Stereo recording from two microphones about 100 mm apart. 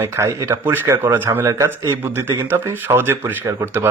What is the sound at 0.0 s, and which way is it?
Speech, 30° right (ahead or behind).